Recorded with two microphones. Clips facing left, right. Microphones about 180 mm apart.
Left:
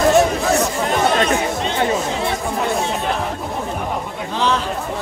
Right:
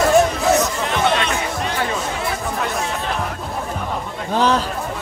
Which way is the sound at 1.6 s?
25° left (ahead or behind).